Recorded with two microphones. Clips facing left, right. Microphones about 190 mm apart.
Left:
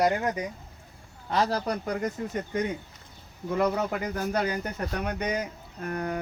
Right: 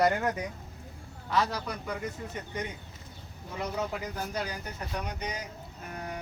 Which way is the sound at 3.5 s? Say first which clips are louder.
Left 7 dB; 60° left (ahead or behind).